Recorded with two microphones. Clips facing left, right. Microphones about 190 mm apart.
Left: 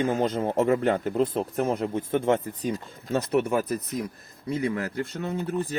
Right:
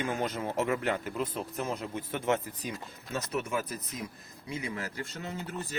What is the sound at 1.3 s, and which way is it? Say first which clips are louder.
Speech: left 8 dB; 55° left (ahead or behind).